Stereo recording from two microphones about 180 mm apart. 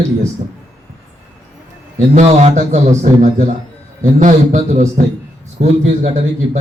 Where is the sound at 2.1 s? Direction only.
35° right (ahead or behind).